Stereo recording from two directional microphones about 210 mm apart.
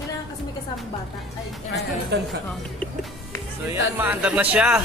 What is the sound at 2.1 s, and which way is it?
Speech, 55° right (ahead or behind).